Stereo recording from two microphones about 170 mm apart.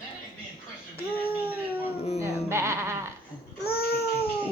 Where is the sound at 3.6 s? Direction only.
65° left (ahead or behind).